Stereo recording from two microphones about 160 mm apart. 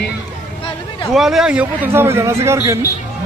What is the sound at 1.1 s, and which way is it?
A man's voice, centre (ahead or behind).